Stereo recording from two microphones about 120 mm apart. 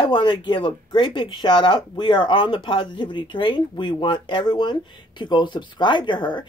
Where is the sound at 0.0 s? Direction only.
40° left (ahead or behind).